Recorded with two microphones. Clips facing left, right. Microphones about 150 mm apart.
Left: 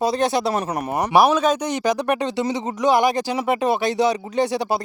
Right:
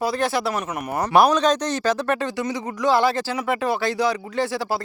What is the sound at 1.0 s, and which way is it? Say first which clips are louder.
Speech: even; 5° left (ahead or behind).